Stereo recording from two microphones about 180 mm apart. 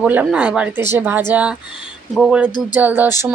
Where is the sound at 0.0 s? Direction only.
10° right (ahead or behind).